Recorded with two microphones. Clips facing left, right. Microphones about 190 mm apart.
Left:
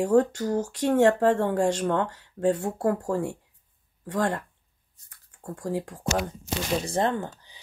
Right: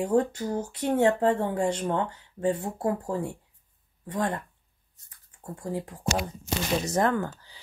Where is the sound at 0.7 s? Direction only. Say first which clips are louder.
Left 2 dB; 75° left (ahead or behind).